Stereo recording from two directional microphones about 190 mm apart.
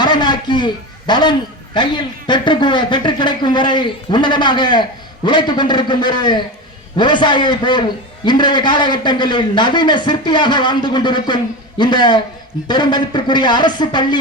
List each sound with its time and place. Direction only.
0.0 s a man's voice: 25° left (ahead or behind)